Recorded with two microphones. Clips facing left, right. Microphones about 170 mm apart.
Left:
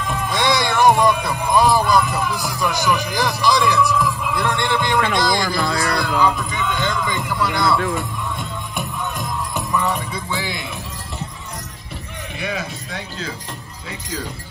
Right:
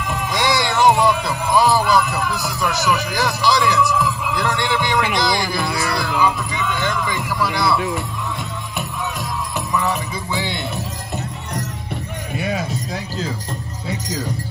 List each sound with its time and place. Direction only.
0.1 s music: 10° right (ahead or behind)